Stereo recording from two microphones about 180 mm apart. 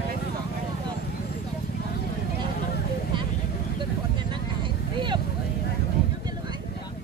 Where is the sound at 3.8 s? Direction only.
25° right (ahead or behind).